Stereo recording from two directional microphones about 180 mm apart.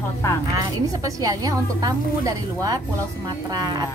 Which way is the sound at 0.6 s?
20° right (ahead or behind).